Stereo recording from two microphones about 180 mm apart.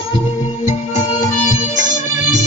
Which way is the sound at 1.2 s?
45° left (ahead or behind).